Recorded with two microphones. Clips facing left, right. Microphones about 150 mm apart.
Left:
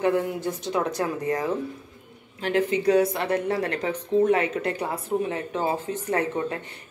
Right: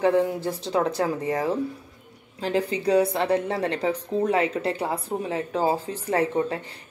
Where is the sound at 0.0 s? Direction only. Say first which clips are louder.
Right 2 dB; 30° right (ahead or behind).